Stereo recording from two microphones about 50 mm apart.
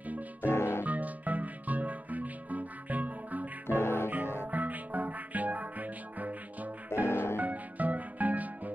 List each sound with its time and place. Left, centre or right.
0.4 s music: left
0.8 s music: right
3.6 s music: left
4.4 s music: right
7.1 s music: left
7.3 s music: right